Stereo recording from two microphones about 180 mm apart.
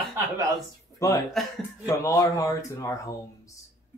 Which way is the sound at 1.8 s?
20° left (ahead or behind).